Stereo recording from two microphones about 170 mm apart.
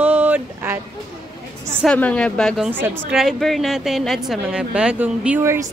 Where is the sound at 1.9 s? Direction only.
5° left (ahead or behind).